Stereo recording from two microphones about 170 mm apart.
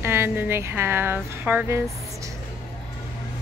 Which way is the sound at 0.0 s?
15° right (ahead or behind).